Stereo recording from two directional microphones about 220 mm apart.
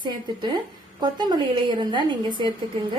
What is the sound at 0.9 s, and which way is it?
A woman's voice, 20° right (ahead or behind).